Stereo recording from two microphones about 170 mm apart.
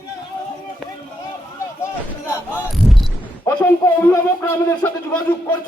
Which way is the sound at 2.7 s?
Centre (ahead or behind).